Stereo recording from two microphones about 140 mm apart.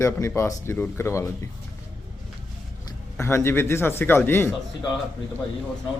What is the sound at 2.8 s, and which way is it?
Speech, 20° left (ahead or behind).